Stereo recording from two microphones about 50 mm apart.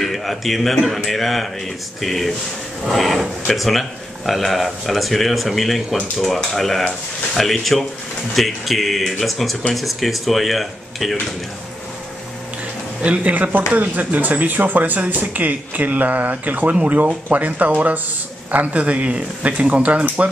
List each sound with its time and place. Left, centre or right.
0.0 s speech: centre
13.0 s speech: right